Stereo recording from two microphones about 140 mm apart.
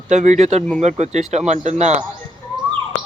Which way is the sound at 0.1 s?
55° right (ahead or behind).